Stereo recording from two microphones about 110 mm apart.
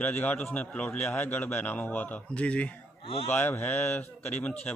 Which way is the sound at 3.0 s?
60° left (ahead or behind).